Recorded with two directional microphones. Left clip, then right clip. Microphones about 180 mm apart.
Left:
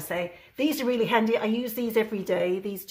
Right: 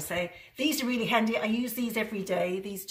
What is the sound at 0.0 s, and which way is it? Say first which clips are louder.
A woman's voice: left 2 dB; 45° left (ahead or behind).